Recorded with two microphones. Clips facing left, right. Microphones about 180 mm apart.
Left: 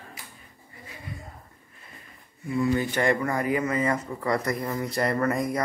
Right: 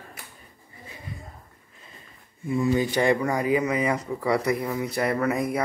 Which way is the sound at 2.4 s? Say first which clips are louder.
Right 2 dB; 25° right (ahead or behind).